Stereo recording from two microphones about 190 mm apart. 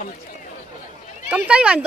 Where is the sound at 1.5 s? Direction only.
5° right (ahead or behind).